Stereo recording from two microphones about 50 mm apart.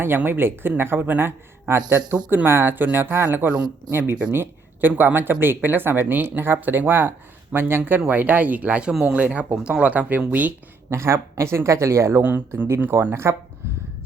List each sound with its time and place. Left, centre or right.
0.3 s speech: right
8.9 s speech: centre
9.1 s speech: right
10.8 s speech: right
12.9 s speech: right